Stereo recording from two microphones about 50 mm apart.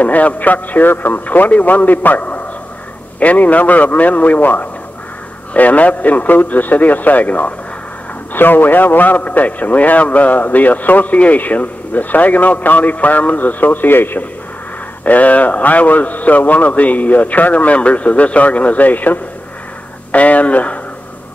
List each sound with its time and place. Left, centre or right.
0.0 s a man's voice: left
8.3 s a man's voice: left
15.0 s a man's voice: left